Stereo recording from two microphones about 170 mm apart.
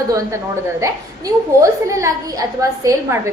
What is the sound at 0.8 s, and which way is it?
A woman's voice, 20° right (ahead or behind).